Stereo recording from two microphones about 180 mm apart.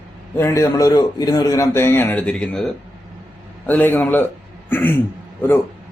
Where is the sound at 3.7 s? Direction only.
10° left (ahead or behind).